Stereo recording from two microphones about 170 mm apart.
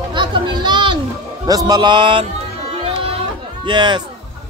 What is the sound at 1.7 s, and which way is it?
Speech, 25° right (ahead or behind).